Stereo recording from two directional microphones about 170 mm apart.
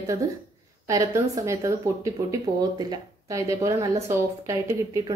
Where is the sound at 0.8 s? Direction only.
20° right (ahead or behind).